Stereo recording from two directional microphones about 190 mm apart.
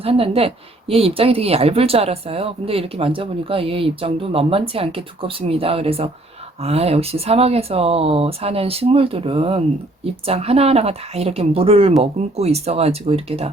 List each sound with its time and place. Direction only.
0.0 s speech: 30° right (ahead or behind)